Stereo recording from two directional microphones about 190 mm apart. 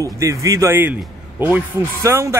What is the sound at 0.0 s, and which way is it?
Speech, 15° right (ahead or behind).